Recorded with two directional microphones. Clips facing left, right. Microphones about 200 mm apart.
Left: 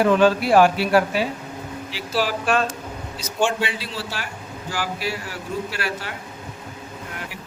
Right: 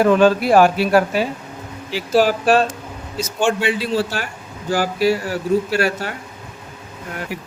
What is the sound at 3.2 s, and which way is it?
Speech, 50° right (ahead or behind).